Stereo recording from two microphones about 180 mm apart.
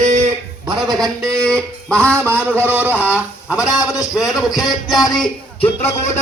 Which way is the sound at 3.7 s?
20° left (ahead or behind).